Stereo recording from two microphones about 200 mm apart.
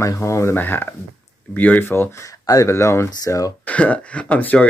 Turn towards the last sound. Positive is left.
turn(degrees=5)  # may be behind; listen again after turning